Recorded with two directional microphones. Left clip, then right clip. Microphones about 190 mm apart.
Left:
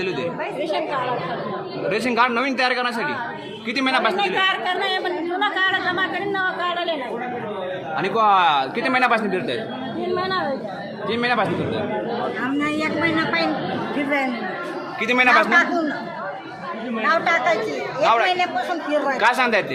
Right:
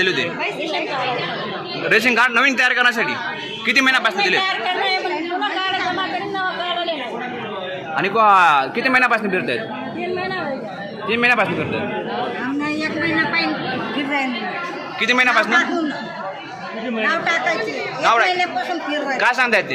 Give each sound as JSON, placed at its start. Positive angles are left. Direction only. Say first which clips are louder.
{"t": 0.0, "sound": "a man's voice", "louder": "right 7 dB", "side_deg": 0}
{"t": 1.9, "sound": "a man's voice", "louder": "right 5 dB", "side_deg": 0}
{"t": 6.3, "sound": "chatter", "louder": "even", "side_deg": 0}
{"t": 7.9, "sound": "a man's voice", "louder": "right 4 dB", "side_deg": -5}
{"t": 11.1, "sound": "a man's voice", "louder": "right 5 dB", "side_deg": -5}
{"t": 12.5, "sound": "a woman's voice", "louder": "even", "side_deg": 25}
{"t": 15.0, "sound": "a man's voice", "louder": "even", "side_deg": 5}
{"t": 17.0, "sound": "a man's voice", "louder": "even", "side_deg": 0}